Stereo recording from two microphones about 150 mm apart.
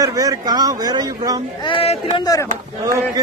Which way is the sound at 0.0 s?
25° right (ahead or behind).